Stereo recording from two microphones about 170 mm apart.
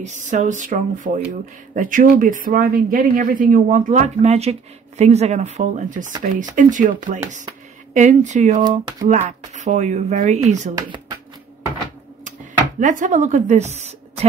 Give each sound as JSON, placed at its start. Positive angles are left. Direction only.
{"t": 0.0, "sound": "speech", "side_deg": -45}
{"t": 10.7, "sound": "speech", "side_deg": -20}
{"t": 12.8, "sound": "speech", "side_deg": -45}